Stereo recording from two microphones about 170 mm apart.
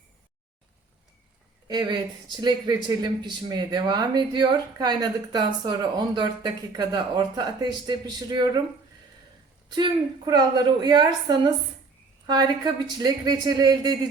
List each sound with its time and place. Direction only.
1.6 s speech: 25° right (ahead or behind)
9.6 s speech: 25° right (ahead or behind)